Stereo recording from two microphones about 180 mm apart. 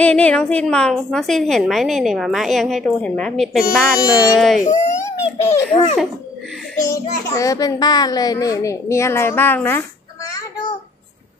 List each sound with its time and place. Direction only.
0.0 s a woman's voice: 5° left (ahead or behind)
5.0 s a sound: 15° left (ahead or behind)
6.8 s a child's voice: 20° left (ahead or behind)